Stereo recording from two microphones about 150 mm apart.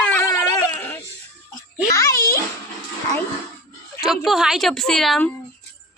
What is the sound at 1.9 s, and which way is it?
Speech, 20° left (ahead or behind).